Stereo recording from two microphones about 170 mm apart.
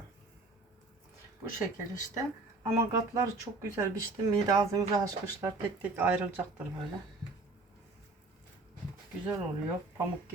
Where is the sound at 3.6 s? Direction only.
20° right (ahead or behind).